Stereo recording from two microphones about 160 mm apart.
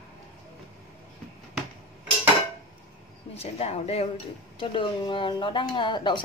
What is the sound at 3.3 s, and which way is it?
Speech, 40° left (ahead or behind).